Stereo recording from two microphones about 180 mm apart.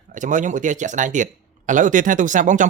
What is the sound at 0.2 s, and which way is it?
Speech, 45° right (ahead or behind).